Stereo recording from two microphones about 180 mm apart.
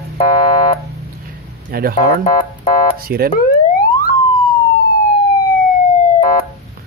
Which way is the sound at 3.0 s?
55° right (ahead or behind).